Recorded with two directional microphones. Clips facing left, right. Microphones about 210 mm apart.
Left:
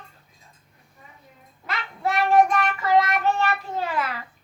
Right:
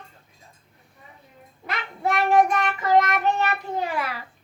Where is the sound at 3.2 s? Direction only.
15° right (ahead or behind).